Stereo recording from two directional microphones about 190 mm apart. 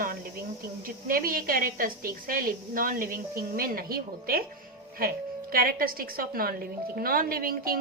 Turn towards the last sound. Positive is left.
turn(degrees=-50)  # may be behind; listen again after turning